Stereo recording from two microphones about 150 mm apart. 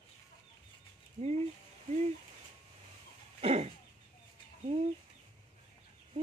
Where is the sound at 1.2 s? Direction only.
45° right (ahead or behind).